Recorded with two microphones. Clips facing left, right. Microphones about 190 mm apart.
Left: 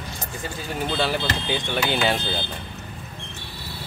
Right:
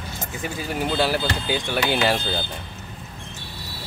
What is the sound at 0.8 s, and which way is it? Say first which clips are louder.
Speech: right 2 dB; 10° right (ahead or behind).